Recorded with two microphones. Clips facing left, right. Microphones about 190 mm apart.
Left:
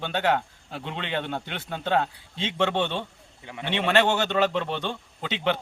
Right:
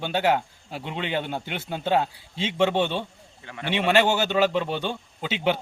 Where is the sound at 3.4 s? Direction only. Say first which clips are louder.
Even; 20° left (ahead or behind).